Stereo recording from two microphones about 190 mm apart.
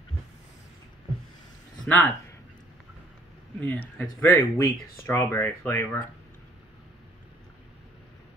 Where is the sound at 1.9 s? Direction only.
10° left (ahead or behind).